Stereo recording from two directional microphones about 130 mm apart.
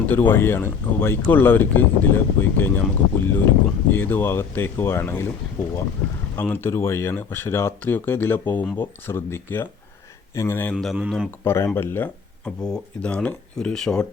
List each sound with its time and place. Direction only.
0.0 s speech: 15° left (ahead or behind)
6.3 s speech: 15° left (ahead or behind)